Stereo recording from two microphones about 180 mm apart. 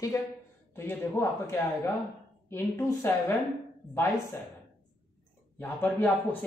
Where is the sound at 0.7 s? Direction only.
15° left (ahead or behind).